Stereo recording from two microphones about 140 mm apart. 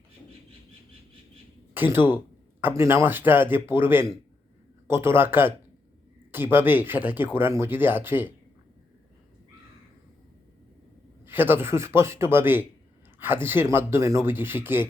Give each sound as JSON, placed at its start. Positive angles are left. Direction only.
{"t": 1.7, "sound": "speech", "side_deg": -15}
{"t": 11.3, "sound": "speech", "side_deg": -15}